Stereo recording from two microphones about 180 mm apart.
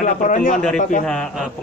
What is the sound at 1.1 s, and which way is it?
Speech, 5° left (ahead or behind).